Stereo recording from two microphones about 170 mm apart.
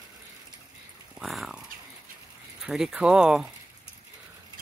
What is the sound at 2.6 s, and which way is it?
Speech, centre (ahead or behind).